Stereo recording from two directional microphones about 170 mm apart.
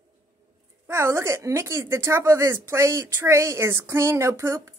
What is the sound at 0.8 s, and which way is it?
Speech, 15° right (ahead or behind).